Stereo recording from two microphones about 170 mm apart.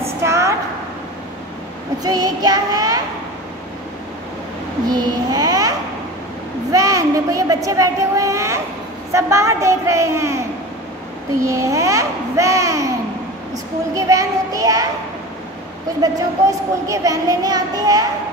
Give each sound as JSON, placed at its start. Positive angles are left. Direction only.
{"t": 0.2, "sound": "a sound", "side_deg": -15}
{"t": 2.0, "sound": "speech", "side_deg": -20}
{"t": 4.8, "sound": "a child's voice", "side_deg": -25}
{"t": 11.4, "sound": "speech", "side_deg": -20}
{"t": 13.9, "sound": "speech", "side_deg": -20}
{"t": 16.0, "sound": "speech", "side_deg": -20}